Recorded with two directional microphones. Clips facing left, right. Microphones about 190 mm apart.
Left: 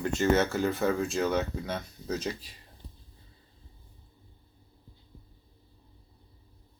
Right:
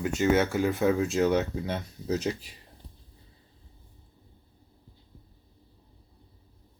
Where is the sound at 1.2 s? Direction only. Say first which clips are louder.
Right 4 dB; 20° right (ahead or behind).